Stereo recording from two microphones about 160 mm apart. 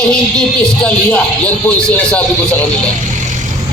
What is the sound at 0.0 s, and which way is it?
Speech, 5° left (ahead or behind).